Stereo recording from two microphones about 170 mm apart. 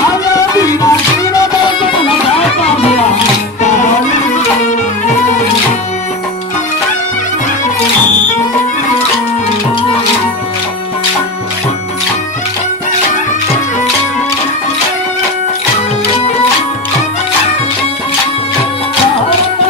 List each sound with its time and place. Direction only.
0.1 s music: 20° left (ahead or behind); by 3.0 s 35° left (ahead or behind)